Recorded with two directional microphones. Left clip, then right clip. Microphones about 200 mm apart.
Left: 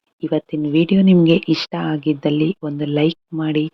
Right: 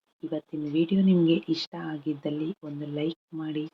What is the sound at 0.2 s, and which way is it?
Speech, 45° left (ahead or behind).